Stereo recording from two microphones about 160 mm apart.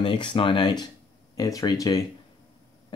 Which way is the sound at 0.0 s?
30° left (ahead or behind).